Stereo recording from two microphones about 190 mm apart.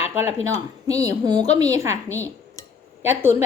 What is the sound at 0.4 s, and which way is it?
A woman's voice, 20° right (ahead or behind).